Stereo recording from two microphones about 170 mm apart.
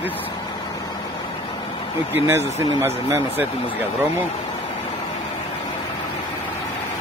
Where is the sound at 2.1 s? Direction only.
15° right (ahead or behind).